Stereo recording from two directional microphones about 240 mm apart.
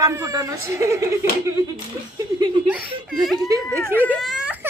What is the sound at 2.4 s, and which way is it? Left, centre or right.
Speech, centre.